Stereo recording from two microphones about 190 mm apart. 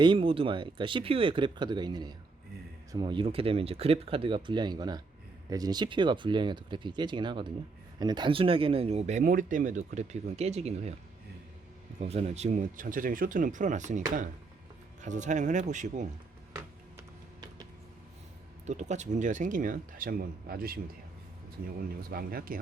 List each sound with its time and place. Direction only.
0.0 s speech: 25° right (ahead or behind)
11.9 s speech: 30° right (ahead or behind)
15.0 s speech: 40° right (ahead or behind)
16.6 s music: 15° right (ahead or behind)
18.6 s speech: 40° right (ahead or behind)
22.1 s speech: 50° right (ahead or behind)